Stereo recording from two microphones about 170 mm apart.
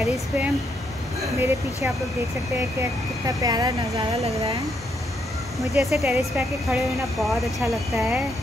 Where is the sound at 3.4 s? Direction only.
25° right (ahead or behind).